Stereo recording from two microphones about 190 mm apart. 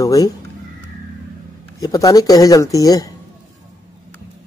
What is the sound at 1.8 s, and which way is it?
Speech, 20° left (ahead or behind).